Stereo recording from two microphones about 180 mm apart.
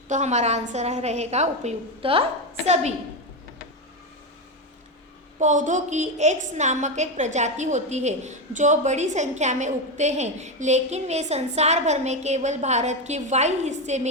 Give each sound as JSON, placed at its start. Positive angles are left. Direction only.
{"t": 0.1, "sound": "a woman's voice", "side_deg": -40}
{"t": 5.4, "sound": "a woman's voice", "side_deg": -45}